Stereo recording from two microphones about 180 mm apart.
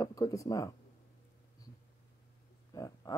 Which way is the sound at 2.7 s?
20° left (ahead or behind).